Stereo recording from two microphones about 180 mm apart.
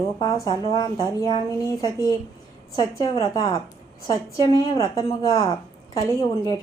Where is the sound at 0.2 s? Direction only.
20° left (ahead or behind).